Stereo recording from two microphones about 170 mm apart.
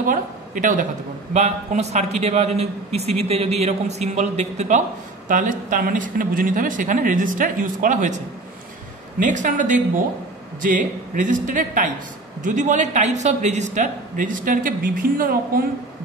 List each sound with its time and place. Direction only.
0.0 s a sound: 50° right (ahead or behind)
1.3 s a man's voice: 40° right (ahead or behind)
9.2 s a man's voice: 45° right (ahead or behind)